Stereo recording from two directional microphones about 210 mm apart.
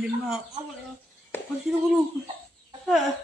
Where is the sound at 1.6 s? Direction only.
10° right (ahead or behind).